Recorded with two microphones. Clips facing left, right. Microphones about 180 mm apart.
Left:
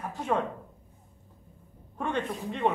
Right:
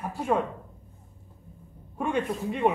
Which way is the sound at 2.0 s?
10° right (ahead or behind).